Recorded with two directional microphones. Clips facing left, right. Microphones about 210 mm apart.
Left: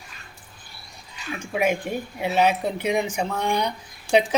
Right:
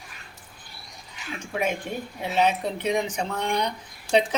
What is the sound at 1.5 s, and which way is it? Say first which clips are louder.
Speech: left 4 dB; 10° left (ahead or behind).